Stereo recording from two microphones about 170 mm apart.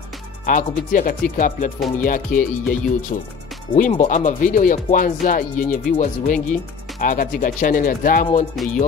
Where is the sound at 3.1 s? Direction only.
40° left (ahead or behind).